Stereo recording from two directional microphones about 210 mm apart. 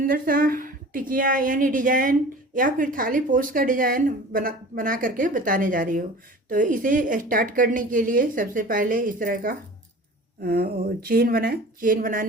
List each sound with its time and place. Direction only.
0.0 s a woman's voice: 45° right (ahead or behind)